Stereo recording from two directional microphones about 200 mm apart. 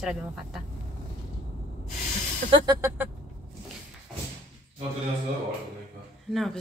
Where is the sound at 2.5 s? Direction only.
20° right (ahead or behind).